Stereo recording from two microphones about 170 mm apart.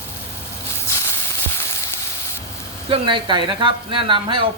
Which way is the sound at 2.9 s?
30° right (ahead or behind).